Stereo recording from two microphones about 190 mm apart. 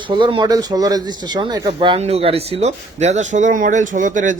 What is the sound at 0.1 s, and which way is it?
Speech, 25° right (ahead or behind).